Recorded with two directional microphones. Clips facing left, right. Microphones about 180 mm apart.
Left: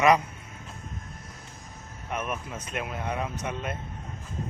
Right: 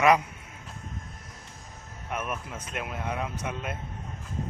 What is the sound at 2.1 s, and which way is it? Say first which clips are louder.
A man's voice: left 1 dB; 5° right (ahead or behind).